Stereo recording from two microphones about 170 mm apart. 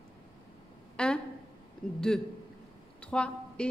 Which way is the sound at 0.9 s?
5° left (ahead or behind).